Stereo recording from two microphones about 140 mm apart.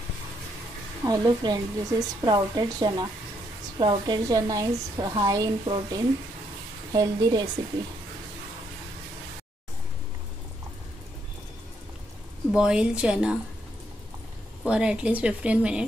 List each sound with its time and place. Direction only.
1.0 s a woman's voice: 30° right (ahead or behind)
12.5 s speech: 5° right (ahead or behind)
14.6 s speech: 5° right (ahead or behind)